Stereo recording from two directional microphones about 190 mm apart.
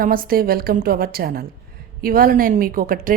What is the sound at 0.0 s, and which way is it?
Speech, 50° right (ahead or behind).